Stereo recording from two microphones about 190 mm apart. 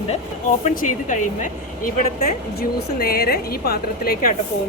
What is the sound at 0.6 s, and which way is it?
Speech, 45° left (ahead or behind).